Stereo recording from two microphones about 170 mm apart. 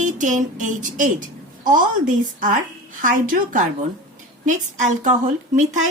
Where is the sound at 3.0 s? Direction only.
50° right (ahead or behind).